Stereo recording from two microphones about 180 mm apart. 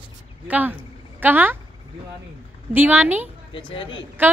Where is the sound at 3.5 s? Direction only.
25° left (ahead or behind).